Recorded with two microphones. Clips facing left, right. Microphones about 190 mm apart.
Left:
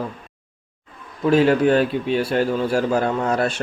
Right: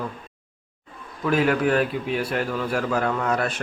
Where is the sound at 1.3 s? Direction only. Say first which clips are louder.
Left 5 dB; 30° left (ahead or behind).